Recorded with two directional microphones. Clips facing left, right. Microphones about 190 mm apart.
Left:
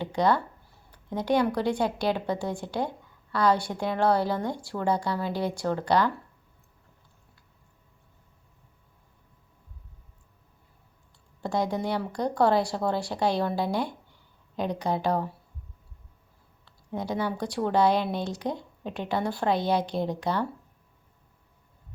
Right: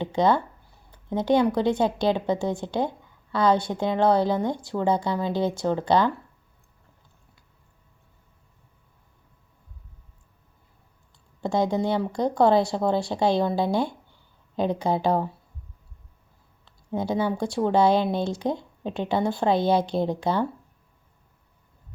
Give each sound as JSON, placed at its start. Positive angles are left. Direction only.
{"t": 0.0, "sound": "a woman's voice", "side_deg": -25}
{"t": 11.3, "sound": "a woman's voice", "side_deg": -25}
{"t": 16.9, "sound": "a woman's voice", "side_deg": -25}